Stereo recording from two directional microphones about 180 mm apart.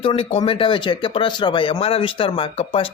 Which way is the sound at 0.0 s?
30° left (ahead or behind).